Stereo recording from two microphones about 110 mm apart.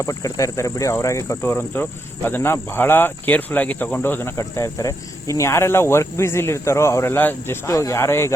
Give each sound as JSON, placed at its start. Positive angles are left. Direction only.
{"t": 0.0, "sound": "speech", "side_deg": 30}